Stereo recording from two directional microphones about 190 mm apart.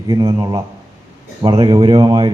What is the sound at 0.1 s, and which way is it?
A man's voice, 20° right (ahead or behind).